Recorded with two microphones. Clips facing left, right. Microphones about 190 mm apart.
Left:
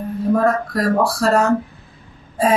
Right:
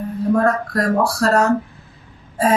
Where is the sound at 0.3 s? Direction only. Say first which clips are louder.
Even; centre (ahead or behind).